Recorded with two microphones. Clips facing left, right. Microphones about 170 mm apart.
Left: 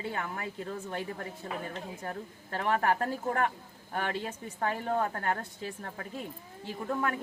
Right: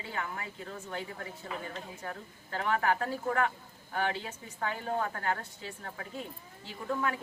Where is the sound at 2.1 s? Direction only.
45° left (ahead or behind).